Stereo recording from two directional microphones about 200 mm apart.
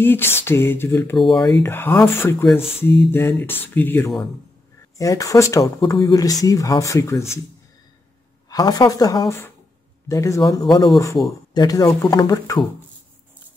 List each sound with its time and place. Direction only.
0.0 s speech: 10° left (ahead or behind)
1.5 s speech: 15° left (ahead or behind)
8.5 s speech: 20° left (ahead or behind)